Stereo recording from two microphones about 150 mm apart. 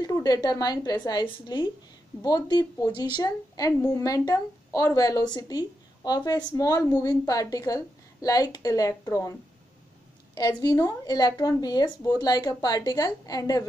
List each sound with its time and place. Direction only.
0.0 s a woman's voice: 25° left (ahead or behind)
10.3 s a woman's voice: 25° left (ahead or behind)